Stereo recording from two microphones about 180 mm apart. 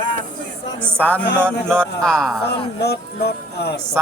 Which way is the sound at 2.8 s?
65° left (ahead or behind).